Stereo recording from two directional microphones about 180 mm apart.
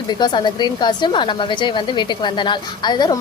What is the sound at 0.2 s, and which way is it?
A woman's voice, 25° left (ahead or behind).